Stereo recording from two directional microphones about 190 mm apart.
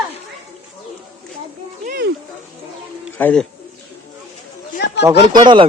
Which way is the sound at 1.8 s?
60° right (ahead or behind).